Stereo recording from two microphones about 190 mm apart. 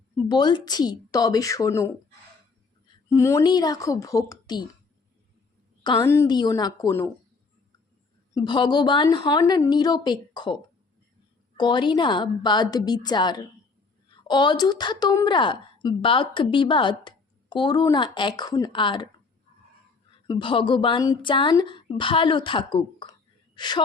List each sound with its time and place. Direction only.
0.2 s a woman's voice: 20° left (ahead or behind)
3.1 s a woman's voice: 15° left (ahead or behind)
5.8 s a woman's voice: 20° left (ahead or behind)
8.3 s a woman's voice: 20° left (ahead or behind)
20.1 s a woman's voice: 25° left (ahead or behind)